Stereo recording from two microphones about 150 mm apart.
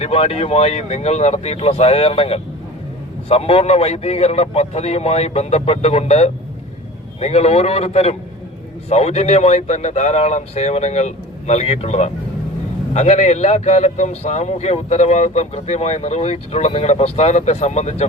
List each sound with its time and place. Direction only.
0.0 s a man's voice: 45° left (ahead or behind)